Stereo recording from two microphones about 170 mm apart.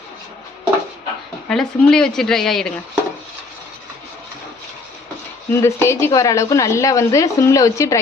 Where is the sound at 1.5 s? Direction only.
5° left (ahead or behind).